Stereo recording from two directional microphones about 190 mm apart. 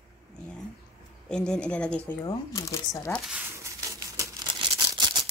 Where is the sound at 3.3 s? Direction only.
15° right (ahead or behind).